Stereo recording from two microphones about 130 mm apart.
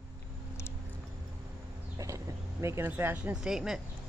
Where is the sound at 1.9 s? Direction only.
25° right (ahead or behind).